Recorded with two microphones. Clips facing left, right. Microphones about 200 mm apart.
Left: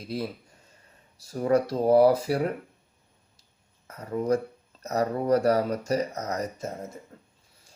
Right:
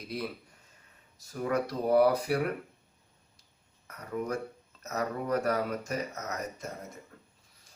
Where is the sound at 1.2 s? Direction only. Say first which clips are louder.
Left 7 dB; 35° left (ahead or behind).